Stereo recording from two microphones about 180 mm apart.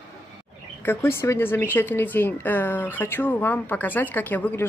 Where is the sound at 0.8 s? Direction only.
15° left (ahead or behind).